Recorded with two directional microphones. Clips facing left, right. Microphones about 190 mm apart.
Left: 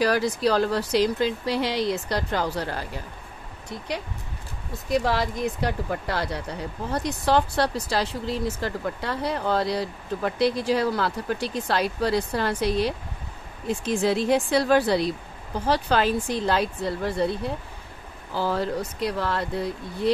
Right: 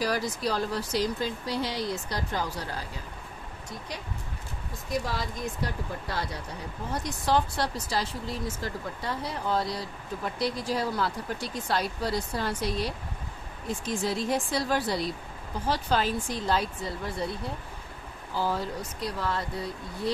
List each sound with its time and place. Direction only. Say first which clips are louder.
0.0 s speech: left 7 dB; 70° left (ahead or behind)
4.9 s speech: left 8 dB; 75° left (ahead or behind)
18.4 s speech: left 5 dB; 70° left (ahead or behind)